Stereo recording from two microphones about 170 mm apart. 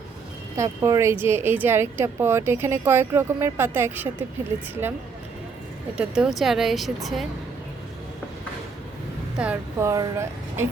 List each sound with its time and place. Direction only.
0.5 s speech: 20° right (ahead or behind)
6.0 s speech: 5° right (ahead or behind)
9.4 s speech: 10° right (ahead or behind)
9.9 s speech: 20° right (ahead or behind)